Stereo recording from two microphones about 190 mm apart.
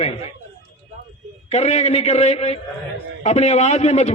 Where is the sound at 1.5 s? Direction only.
35° left (ahead or behind).